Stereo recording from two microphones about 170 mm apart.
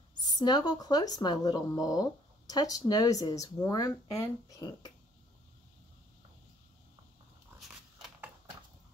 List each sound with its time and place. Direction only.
0.3 s speech: 25° left (ahead or behind)
7.6 s biting: centre (ahead or behind)